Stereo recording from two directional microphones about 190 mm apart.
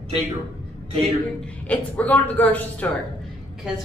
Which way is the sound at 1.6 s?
10° left (ahead or behind).